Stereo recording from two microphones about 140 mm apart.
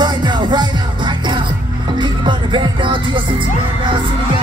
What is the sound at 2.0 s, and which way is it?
Music, 35° right (ahead or behind).